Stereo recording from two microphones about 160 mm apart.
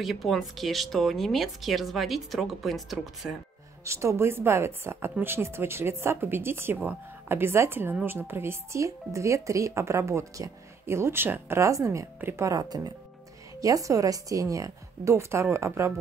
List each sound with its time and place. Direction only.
0.0 s speech: centre (ahead or behind)
3.8 s a woman's voice: 15° right (ahead or behind)